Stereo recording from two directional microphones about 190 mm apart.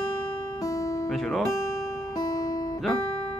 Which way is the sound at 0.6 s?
15° left (ahead or behind).